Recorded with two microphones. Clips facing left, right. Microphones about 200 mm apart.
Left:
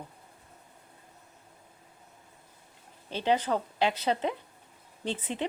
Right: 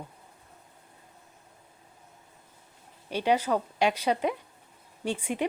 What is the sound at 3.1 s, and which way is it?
A woman's voice, 15° right (ahead or behind).